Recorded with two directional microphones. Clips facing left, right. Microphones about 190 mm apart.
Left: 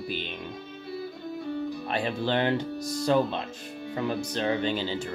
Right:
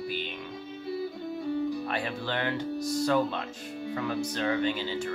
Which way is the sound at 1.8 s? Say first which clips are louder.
Left 4 dB; 25° left (ahead or behind).